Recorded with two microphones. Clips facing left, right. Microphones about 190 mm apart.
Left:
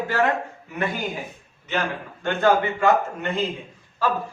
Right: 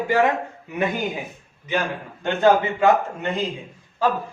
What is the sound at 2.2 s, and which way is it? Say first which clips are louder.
Speech: right 2 dB; 20° right (ahead or behind).